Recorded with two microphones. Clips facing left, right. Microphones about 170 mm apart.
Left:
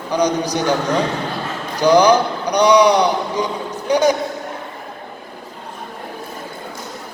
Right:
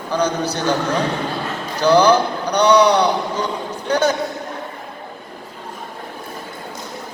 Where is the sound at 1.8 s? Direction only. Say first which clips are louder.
Left 1 dB; 15° left (ahead or behind).